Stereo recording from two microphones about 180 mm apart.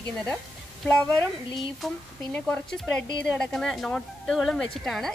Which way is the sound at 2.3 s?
5° left (ahead or behind).